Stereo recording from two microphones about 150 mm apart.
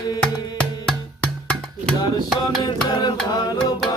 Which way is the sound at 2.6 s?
30° left (ahead or behind).